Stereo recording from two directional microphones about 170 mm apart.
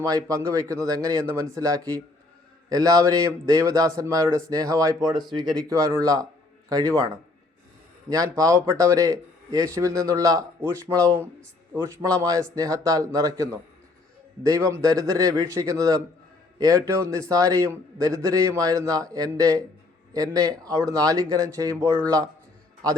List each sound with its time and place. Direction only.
0.0 s a man's voice: 20° right (ahead or behind)
8.1 s a man's voice: 20° right (ahead or behind)
14.7 s a man's voice: 20° right (ahead or behind)